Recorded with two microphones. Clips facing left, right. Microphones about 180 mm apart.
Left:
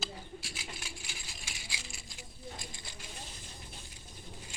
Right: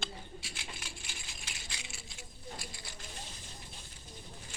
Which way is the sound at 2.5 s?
20° left (ahead or behind).